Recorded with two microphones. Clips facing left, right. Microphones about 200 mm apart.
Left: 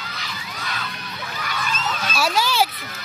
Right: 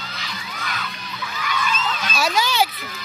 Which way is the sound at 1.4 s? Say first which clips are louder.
Right 4 dB; 45° left (ahead or behind).